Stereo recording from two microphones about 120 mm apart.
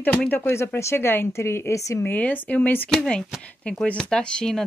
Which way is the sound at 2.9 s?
5° left (ahead or behind).